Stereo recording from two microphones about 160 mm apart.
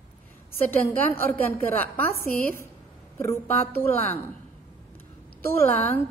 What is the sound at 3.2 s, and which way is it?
Speech, 15° left (ahead or behind).